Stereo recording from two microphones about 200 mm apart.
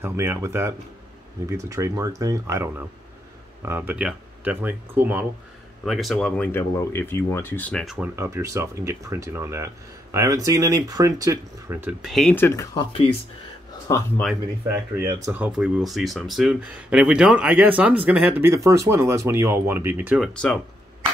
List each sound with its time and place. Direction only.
0.0 s speech: 10° right (ahead or behind)
8.2 s speech: 15° right (ahead or behind); by 12.8 s 15° left (ahead or behind)
13.8 s speech: 15° left (ahead or behind)
14.7 s speech: 15° right (ahead or behind)
20.3 s speech: 5° left (ahead or behind)